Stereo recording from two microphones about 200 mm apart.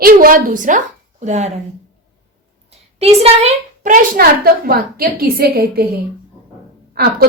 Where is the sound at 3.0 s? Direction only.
30° right (ahead or behind); by 5.8 s 50° right (ahead or behind).